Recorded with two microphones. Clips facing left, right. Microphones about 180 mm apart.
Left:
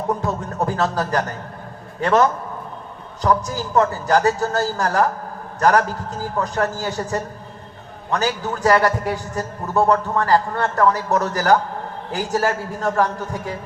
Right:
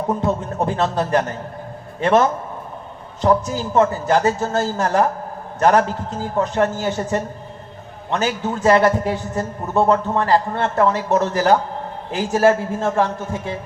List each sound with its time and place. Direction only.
0.2 s a man's voice: 25° right (ahead or behind)